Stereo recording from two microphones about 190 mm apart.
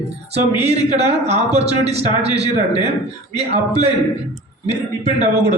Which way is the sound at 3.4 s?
35° right (ahead or behind).